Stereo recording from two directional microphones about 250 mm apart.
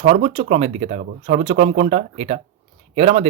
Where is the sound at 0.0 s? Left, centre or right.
Right.